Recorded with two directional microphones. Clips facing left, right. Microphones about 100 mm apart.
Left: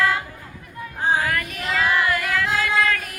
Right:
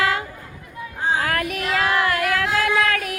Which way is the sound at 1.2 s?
65° right (ahead or behind).